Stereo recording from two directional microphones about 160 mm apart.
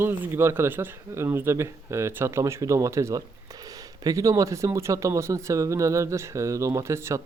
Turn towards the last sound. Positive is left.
turn(degrees=-15)  # may be behind; listen again after turning